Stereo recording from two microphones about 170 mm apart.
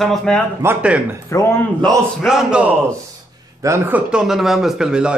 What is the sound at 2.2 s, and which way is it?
Speech, 5° right (ahead or behind).